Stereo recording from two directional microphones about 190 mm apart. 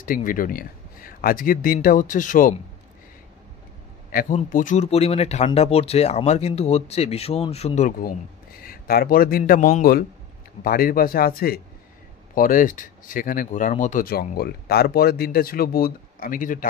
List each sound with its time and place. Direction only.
0.0 s speech: 45° left (ahead or behind)
4.1 s speech: 45° left (ahead or behind)
8.6 s a man's voice: 55° left (ahead or behind)